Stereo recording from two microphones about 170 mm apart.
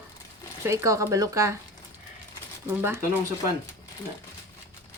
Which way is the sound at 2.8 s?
10° right (ahead or behind).